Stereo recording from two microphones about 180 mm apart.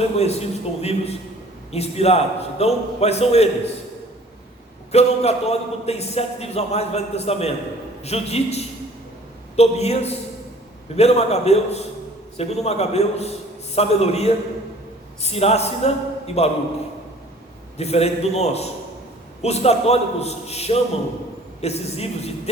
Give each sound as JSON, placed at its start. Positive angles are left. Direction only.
{"t": 0.0, "sound": "a man's voice", "side_deg": 35}
{"t": 4.9, "sound": "a man's voice", "side_deg": 35}
{"t": 17.7, "sound": "a man's voice", "side_deg": 35}